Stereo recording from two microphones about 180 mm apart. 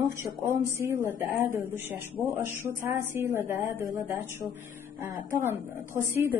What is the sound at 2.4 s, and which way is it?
Speech, 15° right (ahead or behind).